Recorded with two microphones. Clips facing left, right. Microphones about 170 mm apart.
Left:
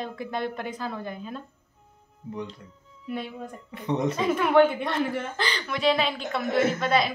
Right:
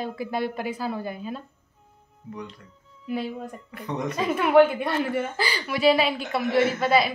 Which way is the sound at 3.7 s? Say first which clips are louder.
Left 4 dB; 25° left (ahead or behind).